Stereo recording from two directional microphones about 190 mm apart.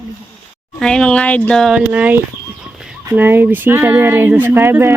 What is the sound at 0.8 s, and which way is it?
Speech, 5° left (ahead or behind).